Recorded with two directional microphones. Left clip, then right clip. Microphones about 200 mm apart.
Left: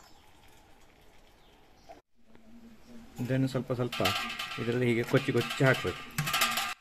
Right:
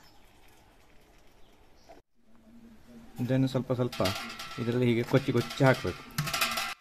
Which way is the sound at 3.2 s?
25° right (ahead or behind).